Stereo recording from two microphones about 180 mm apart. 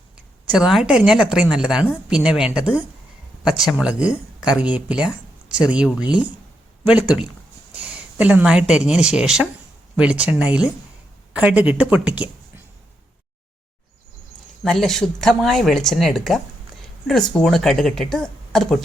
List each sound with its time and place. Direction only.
0.5 s speech: centre (ahead or behind)
14.6 s speech: 5° left (ahead or behind)